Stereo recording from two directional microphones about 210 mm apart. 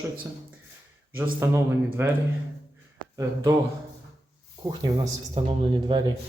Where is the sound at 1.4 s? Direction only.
10° right (ahead or behind).